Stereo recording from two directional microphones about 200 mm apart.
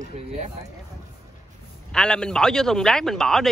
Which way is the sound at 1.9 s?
5° left (ahead or behind).